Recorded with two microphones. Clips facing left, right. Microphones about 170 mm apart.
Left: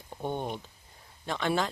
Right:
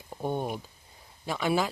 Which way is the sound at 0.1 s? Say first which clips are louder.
Right 2 dB; 10° right (ahead or behind).